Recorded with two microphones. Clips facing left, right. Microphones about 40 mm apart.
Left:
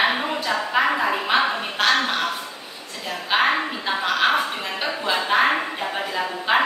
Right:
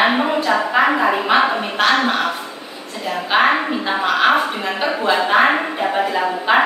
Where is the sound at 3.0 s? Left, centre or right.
Right.